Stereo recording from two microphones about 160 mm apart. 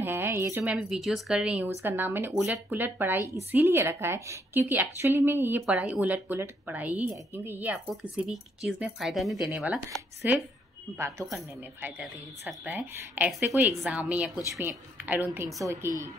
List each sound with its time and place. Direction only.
0.0 s a woman's voice: 15° right (ahead or behind)
11.0 s a woman's voice: 15° right (ahead or behind)